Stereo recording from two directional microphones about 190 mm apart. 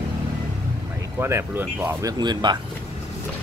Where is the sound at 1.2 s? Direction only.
15° right (ahead or behind).